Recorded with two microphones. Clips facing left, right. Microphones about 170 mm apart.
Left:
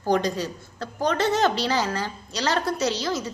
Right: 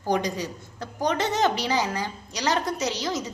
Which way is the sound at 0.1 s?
15° right (ahead or behind).